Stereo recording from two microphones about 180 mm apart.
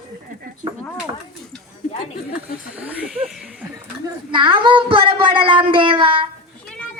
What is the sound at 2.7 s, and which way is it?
Speech, 5° right (ahead or behind).